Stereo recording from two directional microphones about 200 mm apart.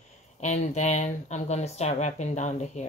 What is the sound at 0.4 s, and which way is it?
Speech, 35° left (ahead or behind).